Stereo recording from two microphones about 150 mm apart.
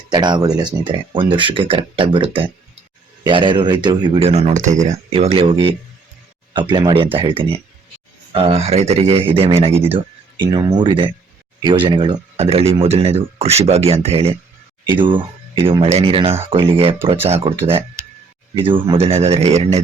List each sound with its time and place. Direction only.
0.1 s speech: 30° right (ahead or behind)
10.3 s speech: 30° right (ahead or behind)
12.4 s speech: 40° right (ahead or behind)